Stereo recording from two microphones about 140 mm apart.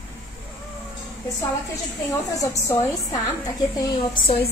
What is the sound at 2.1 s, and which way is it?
A woman's voice, 20° left (ahead or behind).